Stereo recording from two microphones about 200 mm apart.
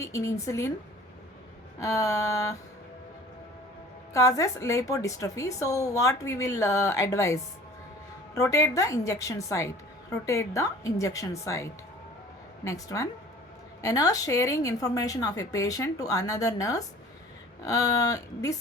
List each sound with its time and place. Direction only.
0.0 s a woman's voice: 15° left (ahead or behind)
1.8 s a woman's voice: 15° left (ahead or behind)
4.1 s a woman's voice: 15° left (ahead or behind)
8.4 s a woman's voice: 15° left (ahead or behind)